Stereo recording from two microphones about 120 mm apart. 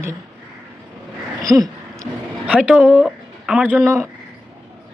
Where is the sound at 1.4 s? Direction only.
30° right (ahead or behind).